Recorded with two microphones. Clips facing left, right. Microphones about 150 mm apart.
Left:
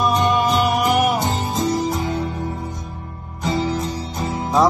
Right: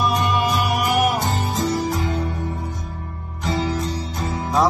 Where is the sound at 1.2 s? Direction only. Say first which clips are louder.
Left 1 dB; 20° left (ahead or behind).